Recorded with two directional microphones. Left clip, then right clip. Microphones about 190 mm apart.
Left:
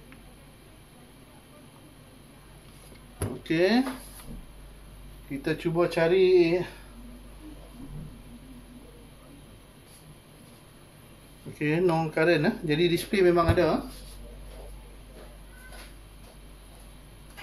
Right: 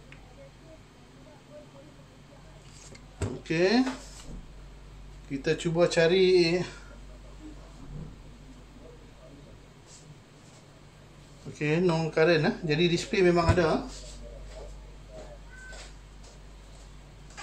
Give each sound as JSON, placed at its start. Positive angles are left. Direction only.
{"t": 3.4, "sound": "speech", "side_deg": 15}
{"t": 5.4, "sound": "speech", "side_deg": 5}
{"t": 11.5, "sound": "speech", "side_deg": 5}